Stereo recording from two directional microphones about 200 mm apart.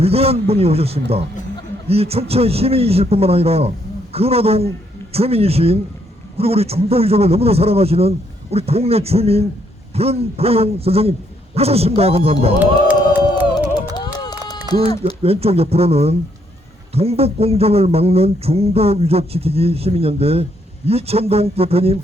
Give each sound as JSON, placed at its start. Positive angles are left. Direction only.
{"t": 0.0, "sound": "a man's voice", "side_deg": -30}
{"t": 13.9, "sound": "run", "side_deg": 20}
{"t": 14.7, "sound": "speech", "side_deg": -30}